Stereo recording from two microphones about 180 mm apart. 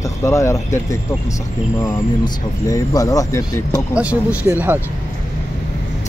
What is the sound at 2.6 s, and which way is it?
Speech, 20° left (ahead or behind).